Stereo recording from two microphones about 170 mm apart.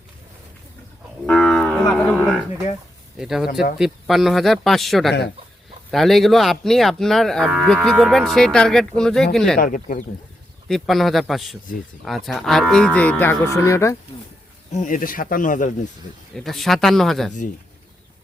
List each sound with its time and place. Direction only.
1.3 s cattle: centre (ahead or behind)
3.2 s moo: centre (ahead or behind)
9.6 s speech: 50° left (ahead or behind)
10.7 s moo: centre (ahead or behind)
12.0 s cattle: centre (ahead or behind); by 13.9 s 15° left (ahead or behind)
14.7 s speech: 45° left (ahead or behind)
16.3 s moo: centre (ahead or behind)